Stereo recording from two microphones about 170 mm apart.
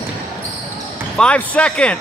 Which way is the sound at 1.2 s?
5° left (ahead or behind).